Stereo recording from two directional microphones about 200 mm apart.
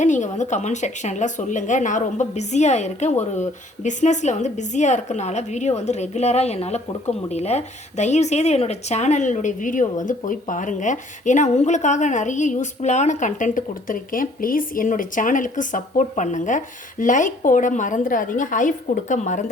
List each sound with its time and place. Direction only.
0.0 s speech: 35° left (ahead or behind)